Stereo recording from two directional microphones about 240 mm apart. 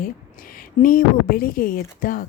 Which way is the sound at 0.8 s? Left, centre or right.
Left.